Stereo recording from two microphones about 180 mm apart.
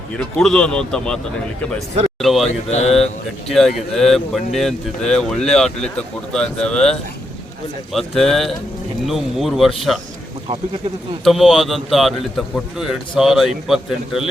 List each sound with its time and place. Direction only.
0.2 s speech: 5° left (ahead or behind)
2.2 s speech: centre (ahead or behind)
2.5 s mantra: 40° left (ahead or behind)
3.5 s speech: centre (ahead or behind)
11.2 s speech: centre (ahead or behind)